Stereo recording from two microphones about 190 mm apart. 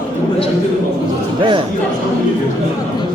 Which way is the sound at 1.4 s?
25° right (ahead or behind).